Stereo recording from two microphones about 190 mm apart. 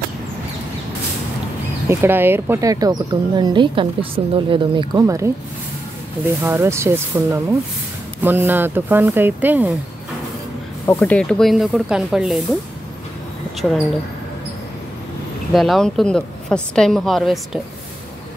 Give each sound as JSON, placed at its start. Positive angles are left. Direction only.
{"t": 1.9, "sound": "speech", "side_deg": -10}
{"t": 10.9, "sound": "a woman's voice", "side_deg": 10}
{"t": 13.6, "sound": "a woman's voice", "side_deg": 0}
{"t": 15.5, "sound": "a woman's voice", "side_deg": 0}